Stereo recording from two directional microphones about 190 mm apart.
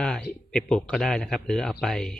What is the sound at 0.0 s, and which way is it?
Speech, 5° left (ahead or behind).